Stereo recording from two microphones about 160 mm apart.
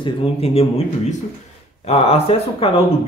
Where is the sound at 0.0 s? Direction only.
40° left (ahead or behind).